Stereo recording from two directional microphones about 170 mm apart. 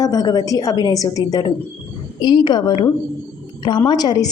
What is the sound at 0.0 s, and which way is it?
A woman's voice, 20° left (ahead or behind).